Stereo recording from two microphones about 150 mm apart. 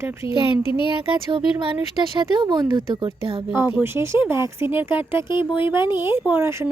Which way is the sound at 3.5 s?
15° right (ahead or behind).